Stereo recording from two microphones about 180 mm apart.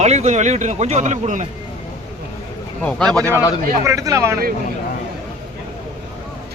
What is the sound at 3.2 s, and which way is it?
Speech, 15° left (ahead or behind).